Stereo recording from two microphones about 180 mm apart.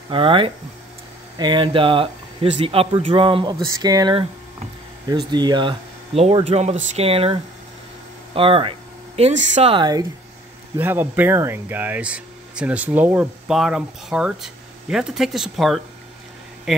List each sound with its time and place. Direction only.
0.1 s speech: 30° right (ahead or behind)
8.4 s speech: 30° right (ahead or behind)
10.8 s speech: 10° right (ahead or behind)